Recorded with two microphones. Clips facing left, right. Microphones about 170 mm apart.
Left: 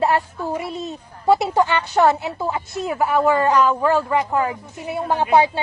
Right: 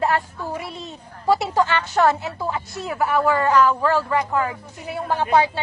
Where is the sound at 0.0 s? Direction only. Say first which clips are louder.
Left 3 dB; 15° left (ahead or behind).